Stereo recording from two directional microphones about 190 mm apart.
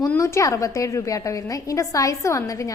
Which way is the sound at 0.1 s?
15° left (ahead or behind).